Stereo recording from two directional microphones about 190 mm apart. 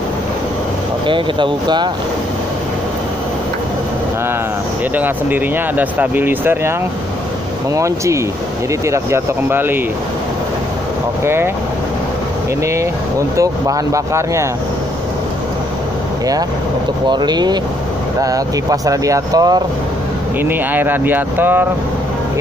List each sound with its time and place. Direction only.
1.0 s speech: 25° right (ahead or behind)
4.9 s speech: 10° right (ahead or behind)
7.7 s speech: 15° right (ahead or behind)
11.2 s speech: 10° right (ahead or behind)
13.4 s speech: 15° right (ahead or behind)
17.1 s speech: 20° right (ahead or behind)